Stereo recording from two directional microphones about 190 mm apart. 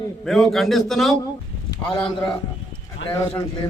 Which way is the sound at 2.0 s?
25° left (ahead or behind).